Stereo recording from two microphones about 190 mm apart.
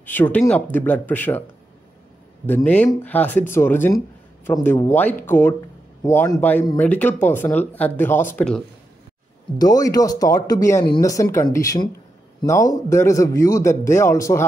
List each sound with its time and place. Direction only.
0.0 s a man's voice: 10° left (ahead or behind)
2.4 s a man's voice: 10° left (ahead or behind)
9.6 s a man's voice: 20° left (ahead or behind)